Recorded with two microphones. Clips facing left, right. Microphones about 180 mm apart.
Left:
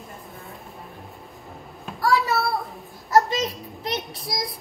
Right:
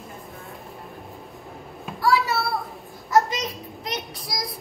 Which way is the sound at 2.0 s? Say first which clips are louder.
Even; centre (ahead or behind).